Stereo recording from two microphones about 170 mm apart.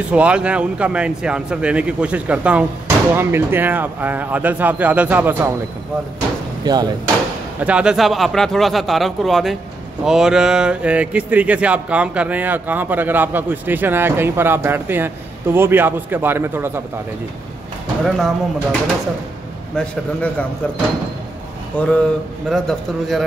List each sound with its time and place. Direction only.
0.1 s speech: 5° right (ahead or behind)
6.6 s speech: 25° right (ahead or behind)
7.6 s speech: 5° right (ahead or behind)
18.0 s a man's voice: centre (ahead or behind)
21.7 s a man's voice: 5° left (ahead or behind)